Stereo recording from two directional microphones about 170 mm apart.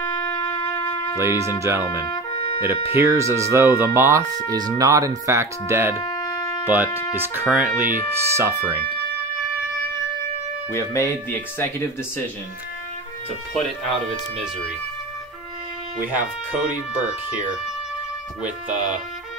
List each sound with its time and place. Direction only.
0.0 s shofar: 20° left (ahead or behind)
1.1 s speech: 15° right (ahead or behind)
2.3 s music: 35° left (ahead or behind)
2.6 s speech: 15° right (ahead or behind)
5.9 s wind instrument: 20° left (ahead or behind)
6.6 s speech: 10° right (ahead or behind)
10.7 s speech: 15° left (ahead or behind)
13.5 s speech: centre (ahead or behind)